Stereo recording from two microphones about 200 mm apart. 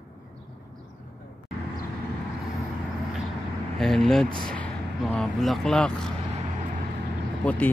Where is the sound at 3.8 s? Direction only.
Centre (ahead or behind).